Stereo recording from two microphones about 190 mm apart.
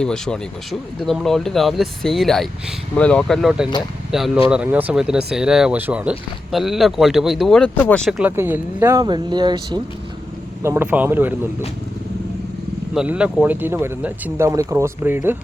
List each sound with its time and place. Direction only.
0.0 s speech: 5° left (ahead or behind)
8.2 s speech: 10° right (ahead or behind)
10.6 s speech: 10° right (ahead or behind)
12.9 s speech: 5° right (ahead or behind)